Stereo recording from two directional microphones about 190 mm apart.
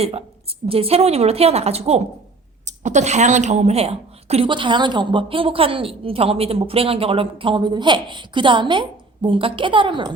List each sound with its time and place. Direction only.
0.0 s a woman's voice: 30° right (ahead or behind)